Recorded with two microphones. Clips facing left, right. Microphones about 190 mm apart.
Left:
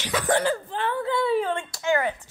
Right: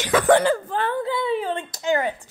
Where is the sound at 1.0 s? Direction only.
Centre (ahead or behind).